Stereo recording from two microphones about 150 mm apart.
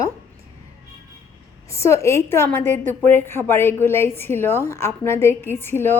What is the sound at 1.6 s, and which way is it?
A woman's voice, 20° left (ahead or behind).